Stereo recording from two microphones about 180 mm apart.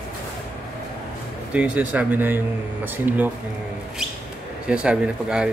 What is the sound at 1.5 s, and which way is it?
Speech, 5° right (ahead or behind).